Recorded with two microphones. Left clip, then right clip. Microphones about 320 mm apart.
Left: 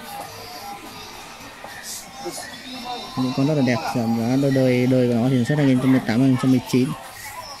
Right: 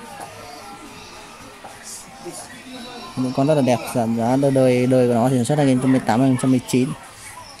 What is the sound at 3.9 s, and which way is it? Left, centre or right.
Speech, right.